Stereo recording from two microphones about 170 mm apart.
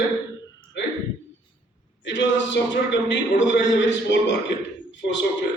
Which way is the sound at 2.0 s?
90° left.